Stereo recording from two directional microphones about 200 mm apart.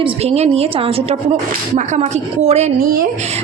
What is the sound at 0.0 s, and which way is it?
A woman's voice, 30° right (ahead or behind).